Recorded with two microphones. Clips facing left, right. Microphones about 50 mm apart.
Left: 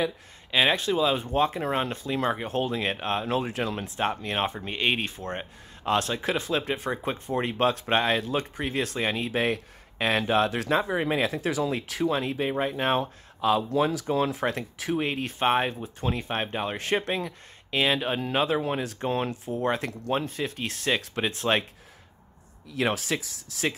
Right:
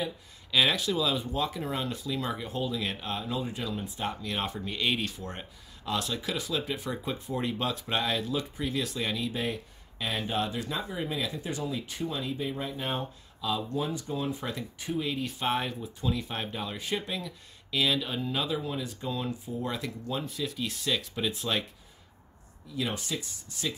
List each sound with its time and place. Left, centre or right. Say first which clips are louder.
0.5 s speech: left 3 dB; left
4.0 s speech: left 7 dB; left
16.7 s speech: left 7 dB; left
22.7 s speech: left 6 dB; left